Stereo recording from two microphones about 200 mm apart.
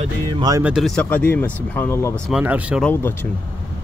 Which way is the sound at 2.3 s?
5° right (ahead or behind).